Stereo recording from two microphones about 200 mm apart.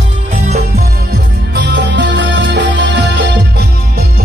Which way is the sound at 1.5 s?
60° right (ahead or behind).